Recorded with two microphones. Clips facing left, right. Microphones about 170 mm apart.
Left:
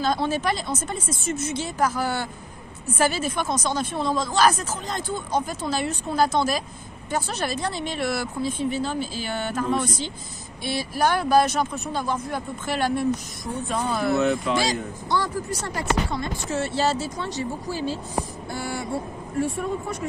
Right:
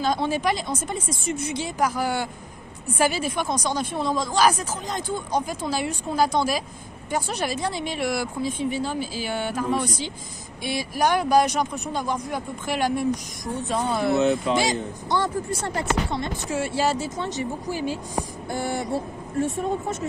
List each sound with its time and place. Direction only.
0.0 s speech: 15° right (ahead or behind)
13.7 s speech: 25° right (ahead or behind)
16.4 s speech: 10° right (ahead or behind)